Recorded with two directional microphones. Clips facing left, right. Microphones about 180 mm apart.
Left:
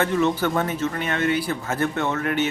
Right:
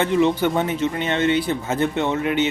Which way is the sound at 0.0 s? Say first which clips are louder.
Right 3 dB; 20° right (ahead or behind).